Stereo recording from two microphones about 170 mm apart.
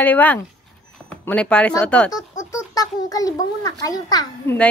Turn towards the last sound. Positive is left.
turn(degrees=20)  # may be behind; listen again after turning